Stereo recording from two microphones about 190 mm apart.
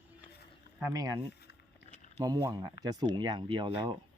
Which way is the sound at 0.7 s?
15° right (ahead or behind).